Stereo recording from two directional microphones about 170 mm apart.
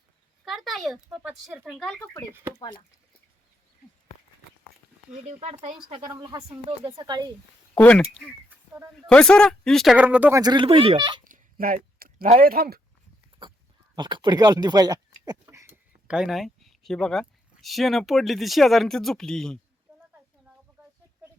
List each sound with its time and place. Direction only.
0.4 s speech: centre (ahead or behind)
1.8 s speech: 5° left (ahead or behind)
5.1 s speech: 40° right (ahead or behind)
6.1 s speech: 20° right (ahead or behind)
7.8 s speech: 5° left (ahead or behind)
9.0 s speech: 5° left (ahead or behind); by 10.4 s 10° right (ahead or behind)
10.4 s speech: 25° right (ahead or behind)
11.3 s a sound: 55° right (ahead or behind)
12.4 s speech: 60° right (ahead or behind)
13.9 s speech: 25° right (ahead or behind)
16.0 s speech: 5° right (ahead or behind)